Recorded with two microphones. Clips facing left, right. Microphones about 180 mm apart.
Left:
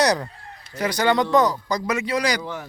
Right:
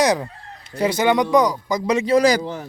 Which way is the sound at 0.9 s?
20° right (ahead or behind).